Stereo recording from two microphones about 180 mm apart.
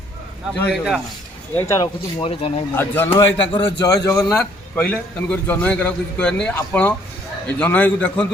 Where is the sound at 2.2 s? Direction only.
30° left (ahead or behind).